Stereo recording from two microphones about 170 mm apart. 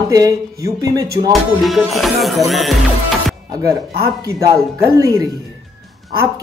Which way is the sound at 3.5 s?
20° right (ahead or behind).